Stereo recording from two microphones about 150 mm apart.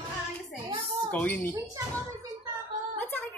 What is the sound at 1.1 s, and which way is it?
Speech, 10° left (ahead or behind).